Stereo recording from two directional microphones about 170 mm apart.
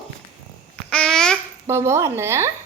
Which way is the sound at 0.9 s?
5° left (ahead or behind).